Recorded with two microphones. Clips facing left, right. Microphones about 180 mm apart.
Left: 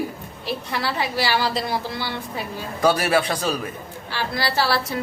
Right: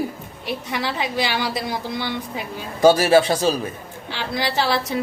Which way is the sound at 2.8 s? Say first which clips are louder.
Right 6 dB; 25° right (ahead or behind).